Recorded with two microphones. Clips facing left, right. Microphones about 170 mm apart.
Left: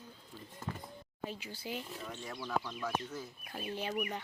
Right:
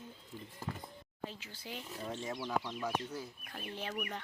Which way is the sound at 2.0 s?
30° right (ahead or behind).